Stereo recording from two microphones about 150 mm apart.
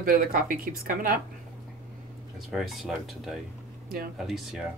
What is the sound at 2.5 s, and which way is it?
Speech, centre (ahead or behind).